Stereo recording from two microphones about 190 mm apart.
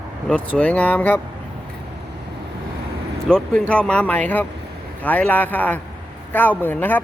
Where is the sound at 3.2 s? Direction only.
5° left (ahead or behind).